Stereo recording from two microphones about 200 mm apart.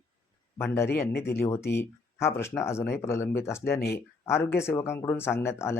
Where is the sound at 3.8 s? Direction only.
50° left (ahead or behind).